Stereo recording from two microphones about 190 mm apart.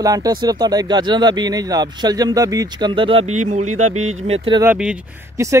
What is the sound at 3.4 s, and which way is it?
Speech, 40° right (ahead or behind).